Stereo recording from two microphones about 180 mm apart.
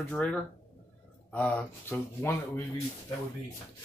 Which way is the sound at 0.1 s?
5° left (ahead or behind).